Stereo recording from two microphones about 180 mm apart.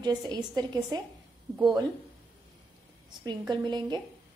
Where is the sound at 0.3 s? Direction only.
20° right (ahead or behind).